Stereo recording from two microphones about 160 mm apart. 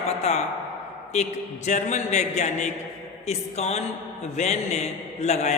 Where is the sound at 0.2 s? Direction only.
45° left (ahead or behind).